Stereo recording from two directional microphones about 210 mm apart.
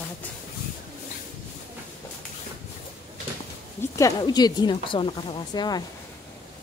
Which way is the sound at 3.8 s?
15° left (ahead or behind).